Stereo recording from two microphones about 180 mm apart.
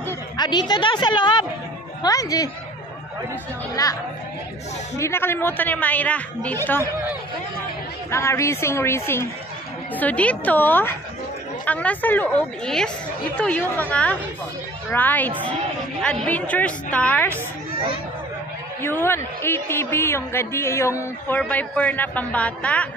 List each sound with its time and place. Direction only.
0.4 s a woman's voice: 25° left (ahead or behind)
4.9 s a man's voice: 15° left (ahead or behind)
8.1 s a man's voice: 15° left (ahead or behind)
18.8 s a man's voice: 10° left (ahead or behind)